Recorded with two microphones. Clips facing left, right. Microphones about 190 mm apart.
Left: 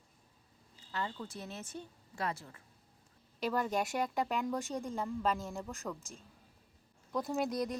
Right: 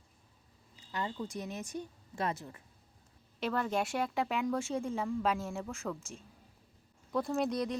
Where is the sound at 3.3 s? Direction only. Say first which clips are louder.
Right 1 dB; 5° left (ahead or behind).